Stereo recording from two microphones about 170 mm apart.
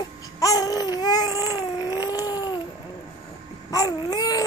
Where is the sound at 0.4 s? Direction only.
20° left (ahead or behind).